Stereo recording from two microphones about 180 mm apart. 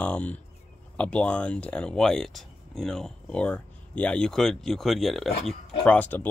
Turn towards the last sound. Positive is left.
turn(degrees=10)  # may be behind; listen again after turning